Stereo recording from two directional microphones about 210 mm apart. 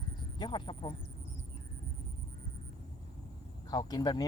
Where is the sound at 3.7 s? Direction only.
20° left (ahead or behind).